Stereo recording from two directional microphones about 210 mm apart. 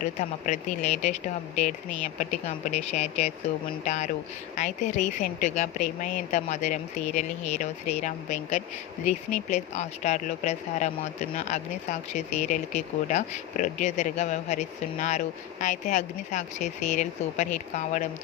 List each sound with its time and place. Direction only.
0.0 s a woman's voice: 35° left (ahead or behind)
2.9 s a woman's voice: 30° left (ahead or behind)